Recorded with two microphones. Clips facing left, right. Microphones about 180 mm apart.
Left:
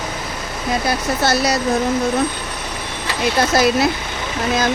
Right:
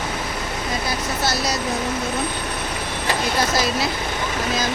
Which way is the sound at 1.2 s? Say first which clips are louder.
Left 6 dB; 60° left (ahead or behind).